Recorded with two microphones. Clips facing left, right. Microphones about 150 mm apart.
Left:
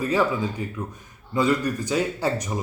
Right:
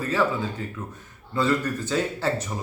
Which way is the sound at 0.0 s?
15° left (ahead or behind).